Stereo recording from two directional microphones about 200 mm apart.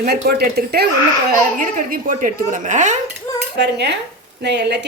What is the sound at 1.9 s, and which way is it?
A woman's voice, 45° right (ahead or behind).